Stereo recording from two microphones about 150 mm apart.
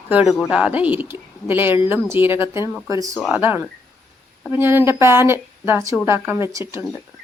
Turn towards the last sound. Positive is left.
turn(degrees=-15)  # may be behind; listen again after turning